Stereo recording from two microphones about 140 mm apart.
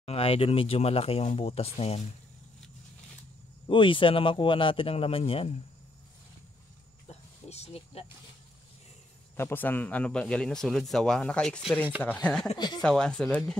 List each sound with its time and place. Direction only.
0.0 s speech: 45° left (ahead or behind)
3.6 s speech: 35° left (ahead or behind)
7.1 s a sound: 50° left (ahead or behind)
9.4 s a man's voice: 15° left (ahead or behind)
12.5 s speech: 30° left (ahead or behind)
12.8 s speech: 5° left (ahead or behind)